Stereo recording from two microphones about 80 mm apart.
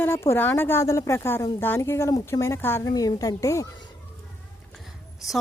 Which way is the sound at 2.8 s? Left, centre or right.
Left.